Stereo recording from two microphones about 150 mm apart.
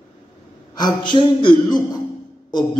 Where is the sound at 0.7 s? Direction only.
30° left (ahead or behind).